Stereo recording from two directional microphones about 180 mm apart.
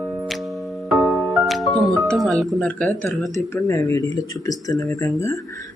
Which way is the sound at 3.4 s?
15° left (ahead or behind).